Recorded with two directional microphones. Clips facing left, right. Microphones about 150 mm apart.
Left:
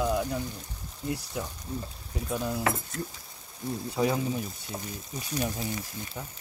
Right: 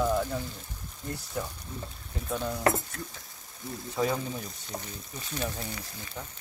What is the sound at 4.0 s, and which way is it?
Speech, 10° left (ahead or behind).